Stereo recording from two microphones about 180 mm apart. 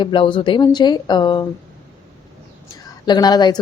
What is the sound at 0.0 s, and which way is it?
A woman's voice, 30° left (ahead or behind).